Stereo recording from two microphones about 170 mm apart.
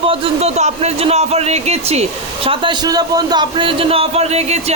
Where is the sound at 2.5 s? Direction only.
25° right (ahead or behind).